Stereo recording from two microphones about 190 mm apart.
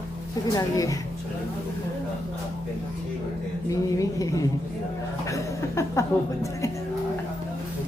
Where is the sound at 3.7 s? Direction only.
15° left (ahead or behind).